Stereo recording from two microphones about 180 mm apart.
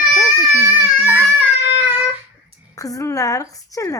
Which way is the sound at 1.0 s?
10° right (ahead or behind).